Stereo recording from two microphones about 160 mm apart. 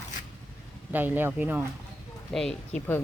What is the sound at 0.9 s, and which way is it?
Speech, 10° right (ahead or behind).